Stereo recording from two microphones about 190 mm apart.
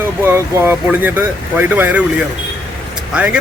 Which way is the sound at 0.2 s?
10° right (ahead or behind).